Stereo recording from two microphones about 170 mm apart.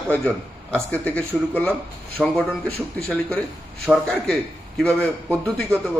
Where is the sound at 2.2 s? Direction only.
10° right (ahead or behind).